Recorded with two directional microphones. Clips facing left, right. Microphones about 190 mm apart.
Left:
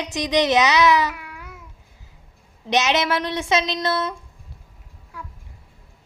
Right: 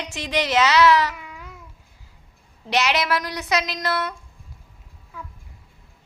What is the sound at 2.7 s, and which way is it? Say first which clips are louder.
A woman's voice: left 2 dB; 20° left (ahead or behind).